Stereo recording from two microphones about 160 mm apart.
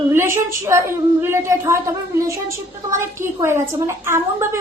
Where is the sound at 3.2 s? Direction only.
15° right (ahead or behind).